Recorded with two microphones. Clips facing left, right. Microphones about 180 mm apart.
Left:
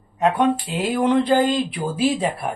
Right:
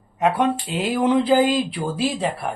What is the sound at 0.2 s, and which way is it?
Speech, 5° right (ahead or behind).